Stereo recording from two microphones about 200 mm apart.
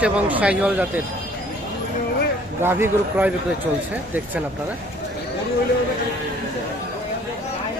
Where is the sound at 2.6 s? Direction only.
10° right (ahead or behind).